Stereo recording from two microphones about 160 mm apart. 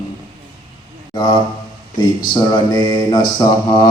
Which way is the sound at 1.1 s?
30° left (ahead or behind).